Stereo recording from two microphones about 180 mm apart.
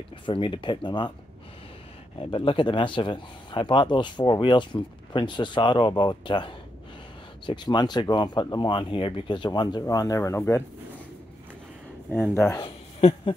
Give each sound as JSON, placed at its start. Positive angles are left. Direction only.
{"t": 0.3, "sound": "speech", "side_deg": 25}
{"t": 2.1, "sound": "speech", "side_deg": 30}
{"t": 12.4, "sound": "speech", "side_deg": 15}
{"t": 12.6, "sound": "a sound", "side_deg": 30}